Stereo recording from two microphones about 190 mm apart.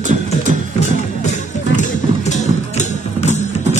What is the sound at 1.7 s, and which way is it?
Music, 40° left (ahead or behind).